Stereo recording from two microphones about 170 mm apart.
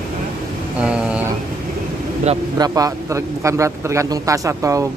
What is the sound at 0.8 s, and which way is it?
Speech, 5° right (ahead or behind).